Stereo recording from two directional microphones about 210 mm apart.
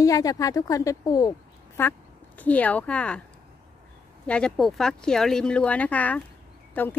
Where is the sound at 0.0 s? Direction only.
15° left (ahead or behind).